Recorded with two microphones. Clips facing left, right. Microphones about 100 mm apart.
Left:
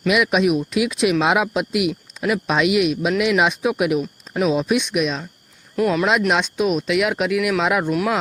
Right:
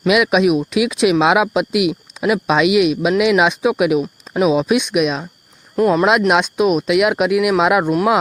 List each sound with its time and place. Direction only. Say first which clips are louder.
0.1 s speech: right 4 dB; 85° right
4.4 s speech: right 4 dB; 75° right (ahead or behind)
5.7 s speech: right 5 dB; 40° right (ahead or behind)
6.1 s speech: right 4 dB; 65° right (ahead or behind)